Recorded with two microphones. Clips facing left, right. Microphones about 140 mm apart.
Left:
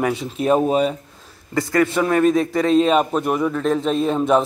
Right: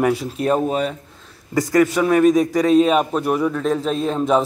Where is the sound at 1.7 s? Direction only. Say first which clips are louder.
Right 2 dB; 10° right (ahead or behind).